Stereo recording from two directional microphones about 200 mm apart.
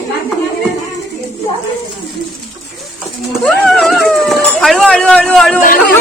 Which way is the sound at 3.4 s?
Centre (ahead or behind).